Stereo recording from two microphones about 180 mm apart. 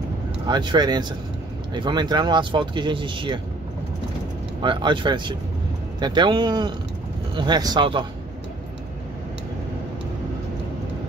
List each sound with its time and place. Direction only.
0.5 s speech: 25° right (ahead or behind)
4.6 s speech: 25° right (ahead or behind)